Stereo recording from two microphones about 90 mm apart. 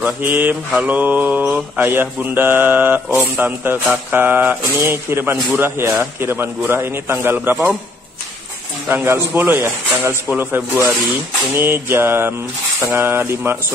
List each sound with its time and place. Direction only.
0.0 s speech: 20° right (ahead or behind)
8.8 s speech: 25° right (ahead or behind)